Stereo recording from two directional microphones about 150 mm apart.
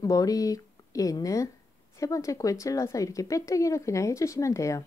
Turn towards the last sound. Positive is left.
turn(degrees=20)  # may be behind; listen again after turning